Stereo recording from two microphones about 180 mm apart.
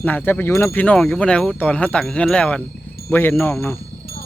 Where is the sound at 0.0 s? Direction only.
10° left (ahead or behind).